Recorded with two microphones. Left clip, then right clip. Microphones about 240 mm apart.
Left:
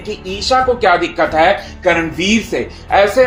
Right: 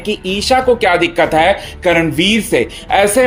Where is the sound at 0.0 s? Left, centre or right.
Right.